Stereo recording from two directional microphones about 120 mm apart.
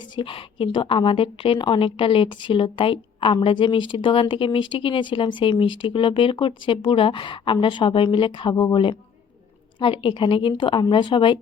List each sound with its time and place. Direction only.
0.2 s a woman's voice: 45° left (ahead or behind)